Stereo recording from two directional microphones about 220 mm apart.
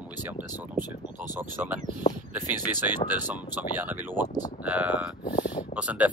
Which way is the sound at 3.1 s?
10° right (ahead or behind).